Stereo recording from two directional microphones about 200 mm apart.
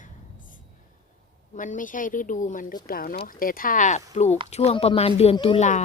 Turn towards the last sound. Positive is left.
turn(degrees=35)  # may be behind; listen again after turning